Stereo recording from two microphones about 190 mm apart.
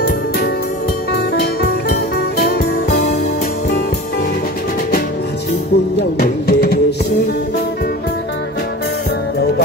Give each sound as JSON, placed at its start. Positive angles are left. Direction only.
{"t": 2.3, "sound": "music", "side_deg": 50}
{"t": 6.1, "sound": "music", "side_deg": 55}